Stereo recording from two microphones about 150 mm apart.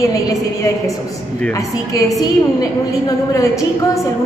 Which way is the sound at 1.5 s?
20° left (ahead or behind).